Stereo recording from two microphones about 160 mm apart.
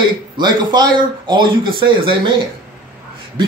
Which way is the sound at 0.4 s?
30° right (ahead or behind).